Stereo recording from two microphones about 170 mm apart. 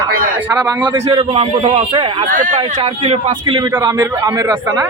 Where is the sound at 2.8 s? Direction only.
30° right (ahead or behind).